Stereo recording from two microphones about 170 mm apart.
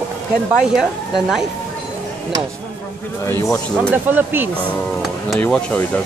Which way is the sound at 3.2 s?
15° left (ahead or behind).